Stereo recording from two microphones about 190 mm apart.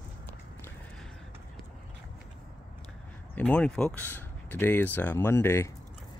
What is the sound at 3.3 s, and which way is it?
Speech, 10° left (ahead or behind).